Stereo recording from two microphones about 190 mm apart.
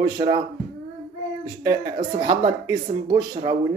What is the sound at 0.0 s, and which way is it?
Speech, 20° right (ahead or behind).